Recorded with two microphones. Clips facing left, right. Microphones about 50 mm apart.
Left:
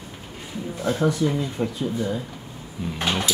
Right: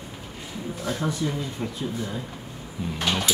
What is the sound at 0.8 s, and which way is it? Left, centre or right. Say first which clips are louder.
Speech: left 6 dB; centre.